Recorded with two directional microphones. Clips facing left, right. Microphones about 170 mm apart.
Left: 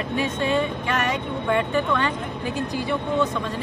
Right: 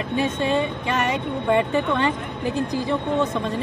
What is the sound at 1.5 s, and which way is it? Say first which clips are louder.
Speech: right 2 dB; 25° right (ahead or behind).